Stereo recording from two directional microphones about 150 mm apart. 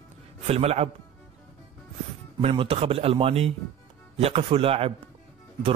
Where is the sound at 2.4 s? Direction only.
40° right (ahead or behind).